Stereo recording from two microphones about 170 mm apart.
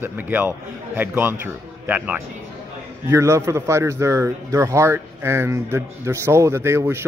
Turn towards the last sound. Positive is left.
turn(degrees=-15)  # may be behind; listen again after turning